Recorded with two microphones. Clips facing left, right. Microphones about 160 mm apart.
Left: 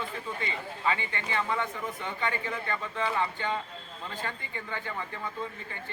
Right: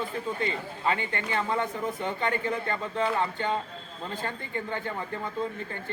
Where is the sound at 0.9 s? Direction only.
40° right (ahead or behind).